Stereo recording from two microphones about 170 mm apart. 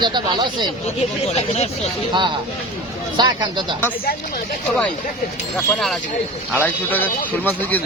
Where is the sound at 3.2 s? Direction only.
25° right (ahead or behind).